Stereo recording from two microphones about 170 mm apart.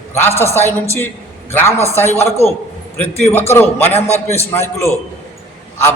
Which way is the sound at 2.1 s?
40° left (ahead or behind).